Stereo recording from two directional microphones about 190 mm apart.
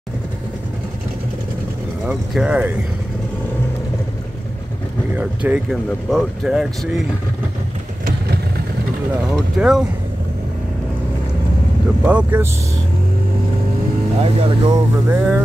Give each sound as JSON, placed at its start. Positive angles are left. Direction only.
{"t": 2.0, "sound": "speech", "side_deg": -5}
{"t": 5.1, "sound": "speech", "side_deg": -5}
{"t": 9.6, "sound": "speech", "side_deg": -5}
{"t": 12.0, "sound": "speech", "side_deg": -10}
{"t": 14.2, "sound": "speech", "side_deg": -25}
{"t": 15.0, "sound": "speech", "side_deg": -10}